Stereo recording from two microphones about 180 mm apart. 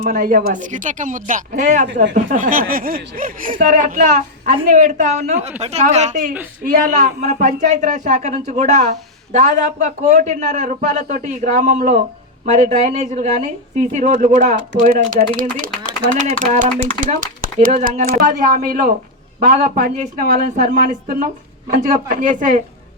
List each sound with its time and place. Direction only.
0.0 s a man's voice: 50° right (ahead or behind)